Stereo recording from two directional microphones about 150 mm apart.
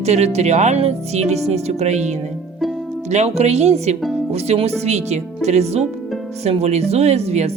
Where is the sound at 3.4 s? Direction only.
45° right (ahead or behind).